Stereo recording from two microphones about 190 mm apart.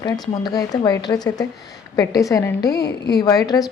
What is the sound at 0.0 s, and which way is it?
A woman's voice, 20° left (ahead or behind).